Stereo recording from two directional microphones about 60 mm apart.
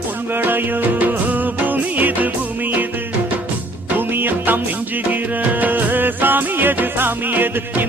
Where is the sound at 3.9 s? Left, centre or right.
Right.